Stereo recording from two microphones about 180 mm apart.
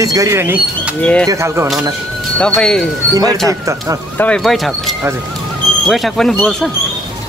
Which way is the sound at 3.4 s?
15° right (ahead or behind).